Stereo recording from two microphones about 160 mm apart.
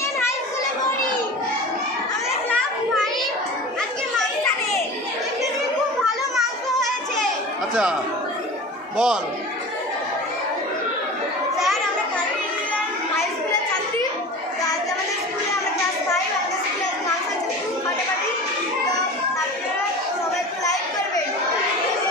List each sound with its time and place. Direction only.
8.9 s speech: 5° right (ahead or behind)